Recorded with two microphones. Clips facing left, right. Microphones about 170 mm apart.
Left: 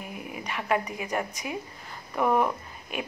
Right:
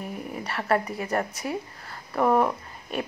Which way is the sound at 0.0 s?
35° right (ahead or behind).